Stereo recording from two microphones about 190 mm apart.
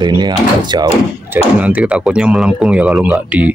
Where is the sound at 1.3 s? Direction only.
10° right (ahead or behind).